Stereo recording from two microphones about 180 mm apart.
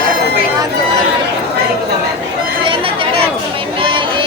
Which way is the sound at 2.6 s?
30° right (ahead or behind).